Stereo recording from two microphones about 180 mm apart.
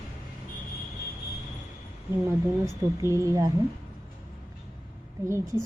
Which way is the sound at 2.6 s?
15° right (ahead or behind).